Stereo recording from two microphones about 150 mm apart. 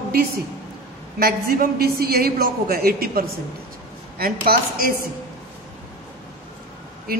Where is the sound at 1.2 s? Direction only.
90° right.